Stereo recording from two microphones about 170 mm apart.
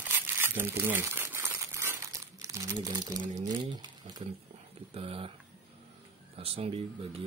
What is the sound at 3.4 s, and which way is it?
Speech, 25° right (ahead or behind).